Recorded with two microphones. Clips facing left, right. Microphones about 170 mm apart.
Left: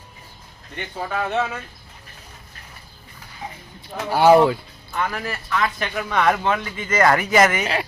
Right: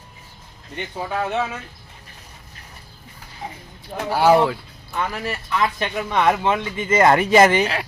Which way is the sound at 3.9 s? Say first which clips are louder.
Right 1 dB; 35° right (ahead or behind).